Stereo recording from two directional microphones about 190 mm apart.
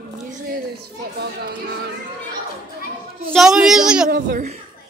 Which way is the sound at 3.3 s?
Centre (ahead or behind).